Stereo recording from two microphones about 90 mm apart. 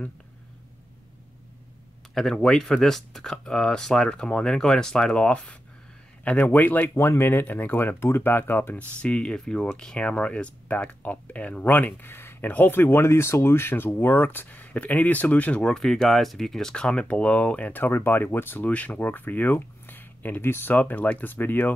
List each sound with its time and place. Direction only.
2.1 s speech: 5° left (ahead or behind); by 21.7 s 20° left (ahead or behind)